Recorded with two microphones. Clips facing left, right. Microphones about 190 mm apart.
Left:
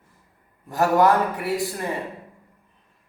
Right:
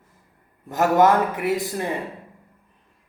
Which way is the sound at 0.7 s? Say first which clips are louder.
Right 1 dB; 20° right (ahead or behind).